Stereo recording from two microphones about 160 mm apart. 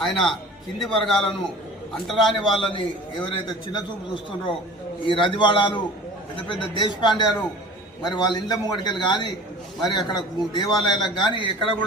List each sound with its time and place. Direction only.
0.0 s a man's voice: 5° left (ahead or behind)
2.6 s a man's voice: 30° left (ahead or behind)